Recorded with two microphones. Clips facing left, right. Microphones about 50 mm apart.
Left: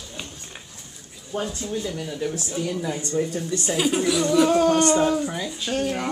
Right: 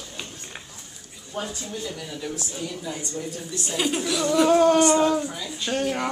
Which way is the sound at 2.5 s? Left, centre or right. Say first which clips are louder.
Left 6 dB; left.